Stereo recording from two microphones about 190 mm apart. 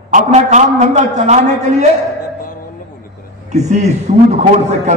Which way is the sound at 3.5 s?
35° right (ahead or behind).